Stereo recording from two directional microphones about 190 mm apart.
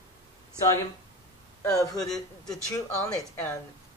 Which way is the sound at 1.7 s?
20° left (ahead or behind).